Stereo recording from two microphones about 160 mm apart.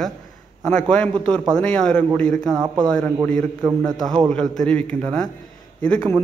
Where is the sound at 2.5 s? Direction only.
20° right (ahead or behind).